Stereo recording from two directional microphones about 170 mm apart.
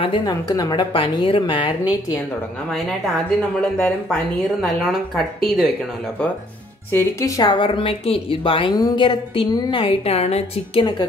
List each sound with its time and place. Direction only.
0.0 s a woman's voice: 25° left (ahead or behind)
2.7 s speech: centre (ahead or behind)
6.9 s a woman's voice: 15° left (ahead or behind)